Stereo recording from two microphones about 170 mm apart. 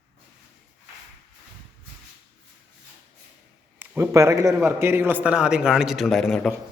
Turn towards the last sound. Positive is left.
turn(degrees=0)  # may be behind; listen again after turning